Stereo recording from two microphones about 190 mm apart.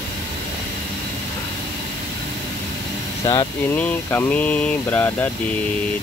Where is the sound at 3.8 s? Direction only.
10° left (ahead or behind).